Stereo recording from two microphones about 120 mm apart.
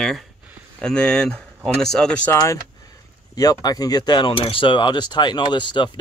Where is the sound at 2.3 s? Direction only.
25° left (ahead or behind).